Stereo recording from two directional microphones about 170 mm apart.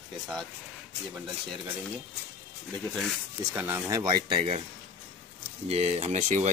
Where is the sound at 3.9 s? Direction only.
20° right (ahead or behind).